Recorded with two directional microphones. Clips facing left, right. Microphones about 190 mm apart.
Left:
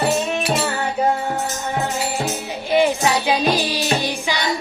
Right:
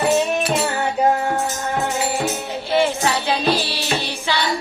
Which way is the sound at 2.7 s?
15° left (ahead or behind).